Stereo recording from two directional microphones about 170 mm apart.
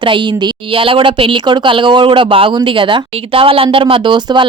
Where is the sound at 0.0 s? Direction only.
30° right (ahead or behind).